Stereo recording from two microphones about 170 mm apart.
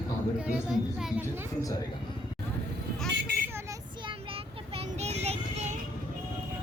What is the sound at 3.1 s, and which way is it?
Vehicle, 80° right.